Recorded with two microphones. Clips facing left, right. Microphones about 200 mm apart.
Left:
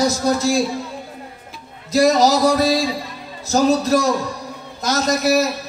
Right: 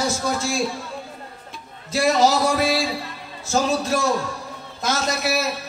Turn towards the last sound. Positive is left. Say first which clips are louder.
# left 7 dB
turn(degrees=40)  # may be behind; listen again after turning